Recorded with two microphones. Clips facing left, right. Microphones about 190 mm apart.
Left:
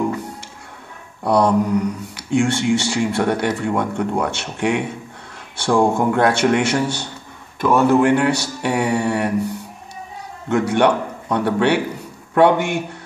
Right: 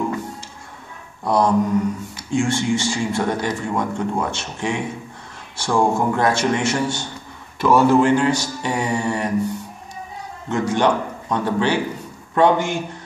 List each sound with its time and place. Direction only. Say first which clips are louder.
1.2 s speech: left 2 dB; 65° left (ahead or behind)
10.5 s speech: left 3 dB; 65° left (ahead or behind)